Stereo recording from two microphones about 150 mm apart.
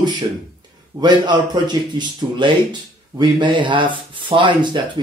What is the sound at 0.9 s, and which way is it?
A man's voice, 30° right (ahead or behind).